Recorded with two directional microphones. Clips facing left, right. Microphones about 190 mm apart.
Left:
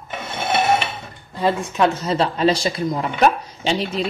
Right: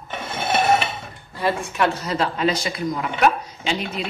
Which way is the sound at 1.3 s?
20° left (ahead or behind).